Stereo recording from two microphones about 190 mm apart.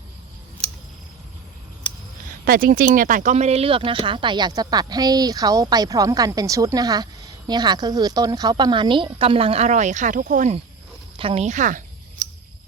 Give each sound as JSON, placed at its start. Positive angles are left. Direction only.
{"t": 2.4, "sound": "speech", "side_deg": -50}